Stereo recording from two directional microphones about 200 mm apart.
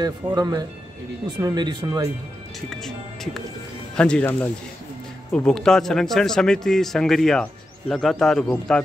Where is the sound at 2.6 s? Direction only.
Centre (ahead or behind).